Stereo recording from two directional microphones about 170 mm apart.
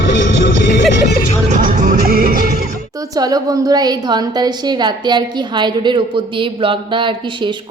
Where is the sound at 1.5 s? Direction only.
50° right (ahead or behind).